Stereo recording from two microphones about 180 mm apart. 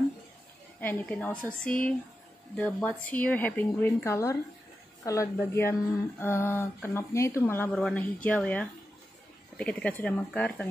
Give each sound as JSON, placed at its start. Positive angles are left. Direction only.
{"t": 0.7, "sound": "speech", "side_deg": 10}